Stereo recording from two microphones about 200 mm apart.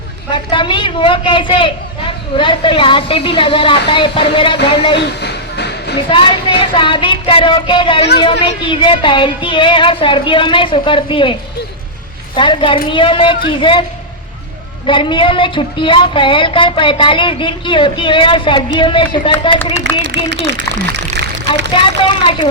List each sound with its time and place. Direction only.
0.3 s a woman's voice: 25° left (ahead or behind)
4.9 s a sound: 55° left (ahead or behind)
6.1 s a woman's voice: 25° left (ahead or behind)
12.4 s a woman's voice: 25° left (ahead or behind)
14.8 s a woman's voice: 25° left (ahead or behind)
19.8 s speech: 60° right (ahead or behind)
21.8 s a woman's voice: 25° left (ahead or behind)